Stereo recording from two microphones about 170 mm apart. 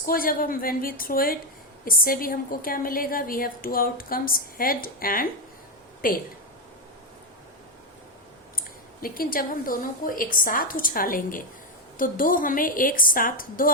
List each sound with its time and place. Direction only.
0.0 s a woman's voice: 60° left (ahead or behind)
8.5 s a woman's voice: 60° left (ahead or behind)